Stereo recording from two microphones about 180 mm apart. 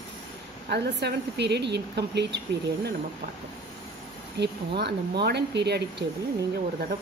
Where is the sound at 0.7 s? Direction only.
65° right (ahead or behind).